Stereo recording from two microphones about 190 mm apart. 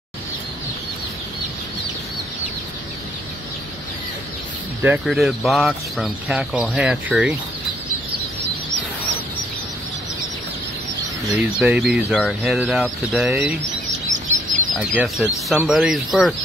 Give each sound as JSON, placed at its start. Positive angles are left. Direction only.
{"t": 4.8, "sound": "speech", "side_deg": 0}
{"t": 11.3, "sound": "speech", "side_deg": -5}
{"t": 14.8, "sound": "speech", "side_deg": -5}